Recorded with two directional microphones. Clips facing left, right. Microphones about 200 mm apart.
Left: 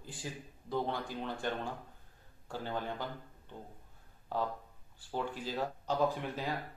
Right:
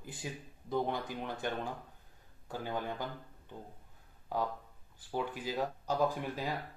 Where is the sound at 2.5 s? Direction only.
15° right (ahead or behind).